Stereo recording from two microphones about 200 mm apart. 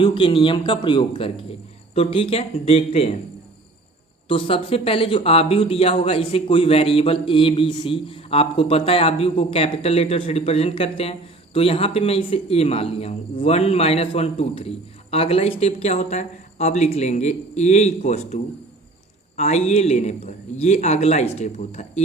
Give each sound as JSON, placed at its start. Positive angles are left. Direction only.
{"t": 0.0, "sound": "speech", "side_deg": 25}
{"t": 4.3, "sound": "speech", "side_deg": 25}
{"t": 19.4, "sound": "speech", "side_deg": 35}